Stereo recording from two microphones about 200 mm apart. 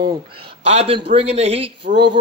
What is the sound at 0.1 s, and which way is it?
A man's voice, 25° right (ahead or behind).